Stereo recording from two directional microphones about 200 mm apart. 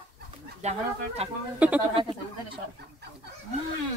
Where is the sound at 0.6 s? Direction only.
35° right (ahead or behind).